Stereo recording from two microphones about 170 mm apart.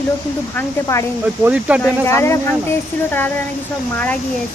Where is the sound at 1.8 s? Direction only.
15° left (ahead or behind).